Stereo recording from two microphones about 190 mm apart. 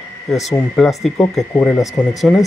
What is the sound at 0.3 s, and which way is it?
Speech, centre (ahead or behind).